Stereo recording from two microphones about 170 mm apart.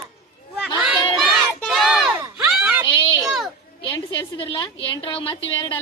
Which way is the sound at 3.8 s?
30° left (ahead or behind).